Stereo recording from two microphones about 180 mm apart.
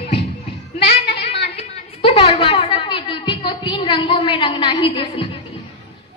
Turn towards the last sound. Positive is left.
turn(degrees=30)  # may be behind; listen again after turning